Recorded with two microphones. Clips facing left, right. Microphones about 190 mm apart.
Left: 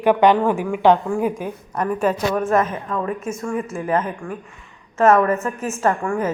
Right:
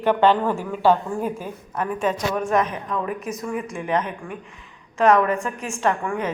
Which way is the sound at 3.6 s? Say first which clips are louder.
Left 2 dB; 5° left (ahead or behind).